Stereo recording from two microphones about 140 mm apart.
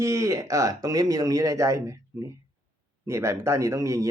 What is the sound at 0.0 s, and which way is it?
Speech, 20° right (ahead or behind).